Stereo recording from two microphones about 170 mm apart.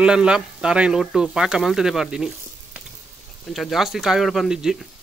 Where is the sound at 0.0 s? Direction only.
5° right (ahead or behind).